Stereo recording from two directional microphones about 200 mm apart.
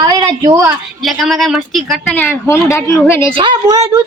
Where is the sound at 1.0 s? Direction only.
Centre (ahead or behind).